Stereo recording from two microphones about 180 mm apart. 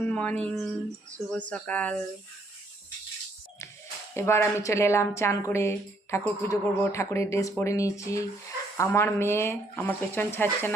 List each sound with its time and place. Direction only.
0.1 s a woman's voice: 5° left (ahead or behind)
4.1 s a woman's voice: 15° left (ahead or behind)